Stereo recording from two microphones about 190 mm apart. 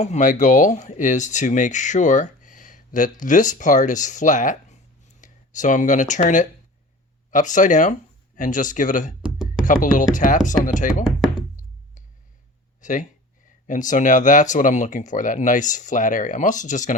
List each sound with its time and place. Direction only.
0.0 s speech: 40° left (ahead or behind)
9.2 s chopping: 5° right (ahead or behind)
9.6 s speech: 45° left (ahead or behind)
11.0 s knock: centre (ahead or behind)
12.8 s speech: 40° left (ahead or behind)